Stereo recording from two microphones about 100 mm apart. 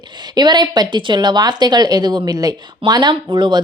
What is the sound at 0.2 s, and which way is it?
A woman's voice, 45° right (ahead or behind).